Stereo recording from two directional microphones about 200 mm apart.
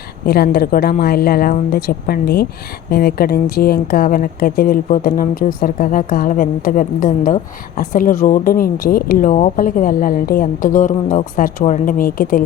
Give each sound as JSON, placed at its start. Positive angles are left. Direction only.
{"t": 0.3, "sound": "speech", "side_deg": 50}